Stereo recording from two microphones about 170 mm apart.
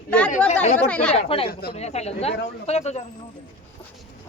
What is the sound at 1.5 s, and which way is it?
Speech, 65° left (ahead or behind).